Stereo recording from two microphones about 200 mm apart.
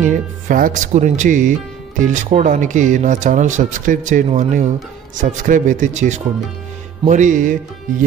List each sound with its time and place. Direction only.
0.1 s speech: 40° right (ahead or behind)